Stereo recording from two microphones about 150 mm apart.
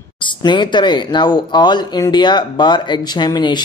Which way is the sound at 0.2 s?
30° left (ahead or behind).